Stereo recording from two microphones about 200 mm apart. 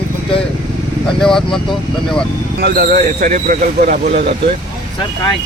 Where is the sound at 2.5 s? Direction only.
50° right (ahead or behind).